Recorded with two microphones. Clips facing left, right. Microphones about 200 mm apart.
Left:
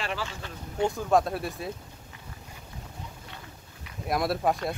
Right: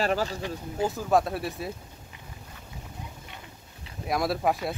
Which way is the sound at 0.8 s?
5° right (ahead or behind).